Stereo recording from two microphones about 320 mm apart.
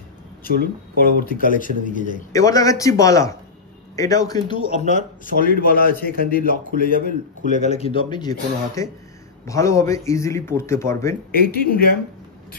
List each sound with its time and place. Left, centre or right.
0.4 s speech: left
2.3 s a man's voice: centre
11.3 s speech: left